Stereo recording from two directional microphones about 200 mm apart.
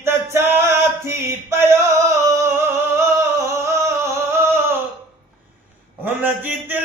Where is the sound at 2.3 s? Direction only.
15° right (ahead or behind).